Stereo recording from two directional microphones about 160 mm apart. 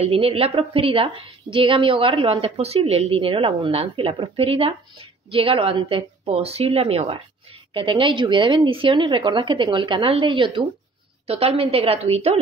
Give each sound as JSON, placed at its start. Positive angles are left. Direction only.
{"t": 0.0, "sound": "a woman's voice", "side_deg": -35}